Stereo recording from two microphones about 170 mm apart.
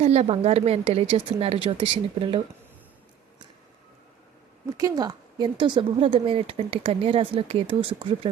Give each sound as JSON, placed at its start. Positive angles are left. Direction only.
{"t": 0.0, "sound": "speech", "side_deg": -40}
{"t": 4.8, "sound": "speech", "side_deg": -20}